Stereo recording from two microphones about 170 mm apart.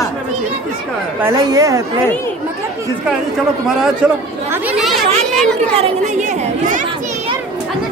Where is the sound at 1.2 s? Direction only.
20° right (ahead or behind).